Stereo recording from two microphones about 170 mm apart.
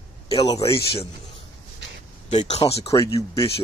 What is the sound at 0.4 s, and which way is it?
Speech, 20° left (ahead or behind).